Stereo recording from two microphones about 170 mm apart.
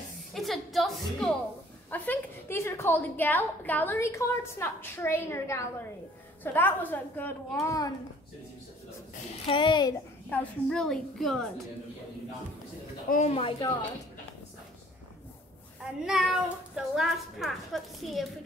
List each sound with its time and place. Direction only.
0.3 s music: centre (ahead or behind)
1.9 s a woman's voice: 10° left (ahead or behind)
9.5 s a child's voice: 30° left (ahead or behind)
10.3 s speech: 5° left (ahead or behind)
13.1 s a woman's voice: 40° left (ahead or behind)
16.1 s speech: 5° right (ahead or behind)